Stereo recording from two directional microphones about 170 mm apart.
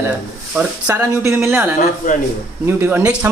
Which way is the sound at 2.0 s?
50° left (ahead or behind).